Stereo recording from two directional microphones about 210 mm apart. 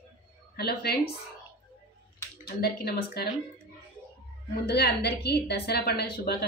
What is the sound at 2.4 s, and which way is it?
Speech, 50° left (ahead or behind).